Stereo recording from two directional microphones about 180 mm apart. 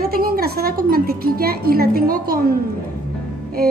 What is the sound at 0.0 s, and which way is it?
A woman's voice, 55° right (ahead or behind).